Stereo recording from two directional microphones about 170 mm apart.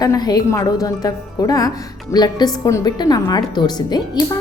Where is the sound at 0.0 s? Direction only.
20° left (ahead or behind).